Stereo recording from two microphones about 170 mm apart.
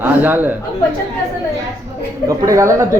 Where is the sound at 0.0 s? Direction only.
10° right (ahead or behind).